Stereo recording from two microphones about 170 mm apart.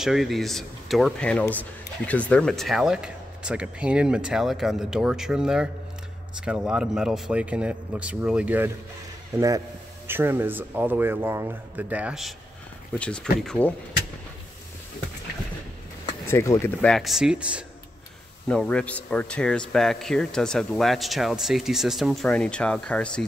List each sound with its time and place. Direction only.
0.0 s speech: centre (ahead or behind)
10.0 s speech: 15° right (ahead or behind); by 13.7 s 5° left (ahead or behind)
16.3 s speech: 15° left (ahead or behind)
16.8 s speech: centre (ahead or behind)
18.5 s speech: 5° left (ahead or behind)